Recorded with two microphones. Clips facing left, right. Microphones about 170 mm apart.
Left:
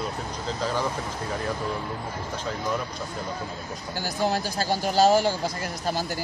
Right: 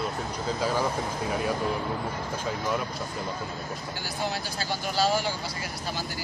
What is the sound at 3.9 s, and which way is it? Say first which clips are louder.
Speech: left 8 dB; 45° left (ahead or behind).